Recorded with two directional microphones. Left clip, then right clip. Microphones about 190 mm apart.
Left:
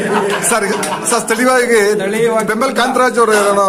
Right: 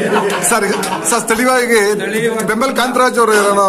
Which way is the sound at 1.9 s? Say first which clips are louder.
Left 2 dB; 30° left (ahead or behind).